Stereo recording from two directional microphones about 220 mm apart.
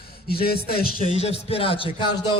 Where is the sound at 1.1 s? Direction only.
30° left (ahead or behind).